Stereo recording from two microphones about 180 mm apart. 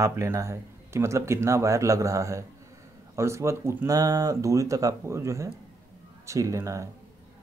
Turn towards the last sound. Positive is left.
turn(degrees=-15)  # may be behind; listen again after turning